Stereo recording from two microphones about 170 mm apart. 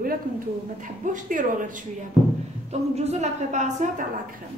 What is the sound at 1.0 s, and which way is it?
Speech, 50° right (ahead or behind).